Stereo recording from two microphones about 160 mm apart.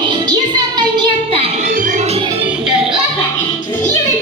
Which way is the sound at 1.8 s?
50° right (ahead or behind).